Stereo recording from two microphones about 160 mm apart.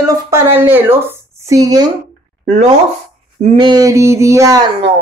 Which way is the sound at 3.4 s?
45° right (ahead or behind).